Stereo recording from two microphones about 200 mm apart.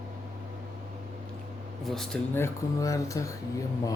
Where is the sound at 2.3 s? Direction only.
15° left (ahead or behind).